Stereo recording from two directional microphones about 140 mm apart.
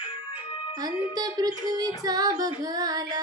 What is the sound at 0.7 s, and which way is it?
Female singing, 25° right (ahead or behind).